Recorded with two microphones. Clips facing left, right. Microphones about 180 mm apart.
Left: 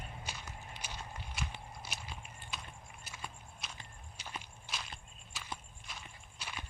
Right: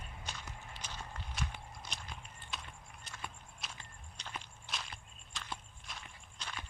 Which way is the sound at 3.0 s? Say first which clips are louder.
Even; 5° left (ahead or behind).